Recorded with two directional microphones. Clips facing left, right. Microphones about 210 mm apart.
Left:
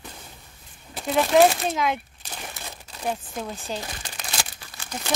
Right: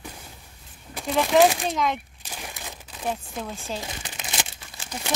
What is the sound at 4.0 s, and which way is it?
Crumpling, 20° right (ahead or behind).